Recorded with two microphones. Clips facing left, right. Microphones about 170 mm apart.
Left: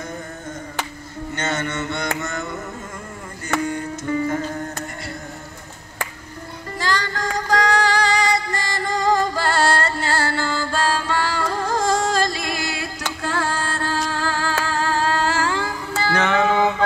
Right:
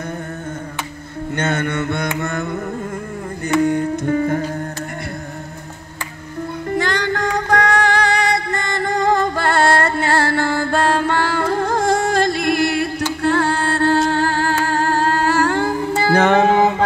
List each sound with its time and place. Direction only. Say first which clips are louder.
1.3 s music: right 5 dB; 55° right (ahead or behind)
3.6 s music: right 8 dB; 55° right (ahead or behind)
6.8 s music: right 3 dB; 60° right (ahead or behind); by 16.8 s 45° right (ahead or behind)